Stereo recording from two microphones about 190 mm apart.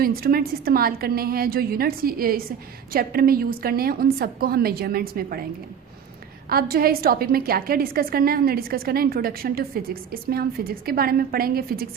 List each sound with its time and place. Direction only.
0.0 s a woman's voice: 50° right (ahead or behind)
6.5 s a woman's voice: 50° right (ahead or behind)